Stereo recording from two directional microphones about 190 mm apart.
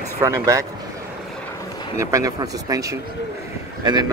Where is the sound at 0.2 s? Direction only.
15° right (ahead or behind).